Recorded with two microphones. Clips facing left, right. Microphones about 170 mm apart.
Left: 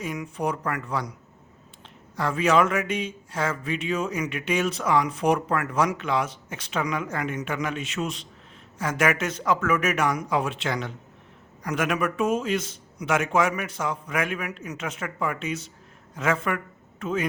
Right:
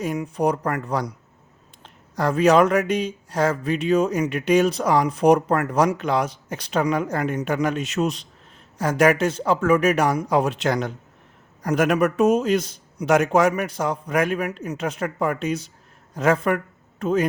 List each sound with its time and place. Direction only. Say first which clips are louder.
0.0 s a man's voice: right 6 dB; 35° right (ahead or behind)
2.1 s a man's voice: right 5 dB; 40° right (ahead or behind)